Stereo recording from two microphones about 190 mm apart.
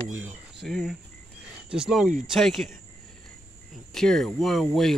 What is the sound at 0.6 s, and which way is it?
Speech, centre (ahead or behind).